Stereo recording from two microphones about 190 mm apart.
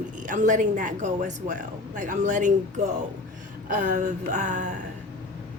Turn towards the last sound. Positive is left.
turn(degrees=-40)  # may be behind; listen again after turning